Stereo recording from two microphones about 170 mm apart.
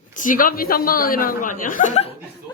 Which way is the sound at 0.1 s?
50° left (ahead or behind).